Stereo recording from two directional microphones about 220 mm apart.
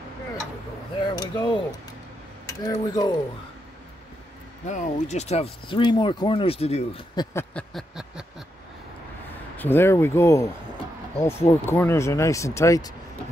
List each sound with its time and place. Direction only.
1.2 s speech: 20° left (ahead or behind)
4.6 s speech: 30° left (ahead or behind)
7.3 s a sound: 5° left (ahead or behind)
9.6 s speech: 10° left (ahead or behind)